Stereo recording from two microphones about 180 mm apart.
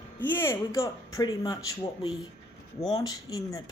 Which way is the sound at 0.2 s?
15° left (ahead or behind).